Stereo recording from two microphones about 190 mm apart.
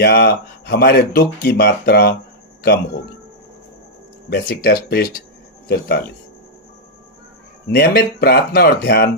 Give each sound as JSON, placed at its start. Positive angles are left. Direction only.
{"t": 0.0, "sound": "speech", "side_deg": 60}
{"t": 4.3, "sound": "speech", "side_deg": 55}
{"t": 7.7, "sound": "speech", "side_deg": 55}